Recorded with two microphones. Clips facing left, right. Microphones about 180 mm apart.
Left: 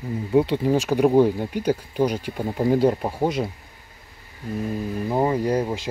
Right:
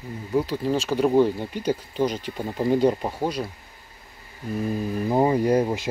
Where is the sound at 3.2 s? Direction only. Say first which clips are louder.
Left 4 dB; 20° left (ahead or behind).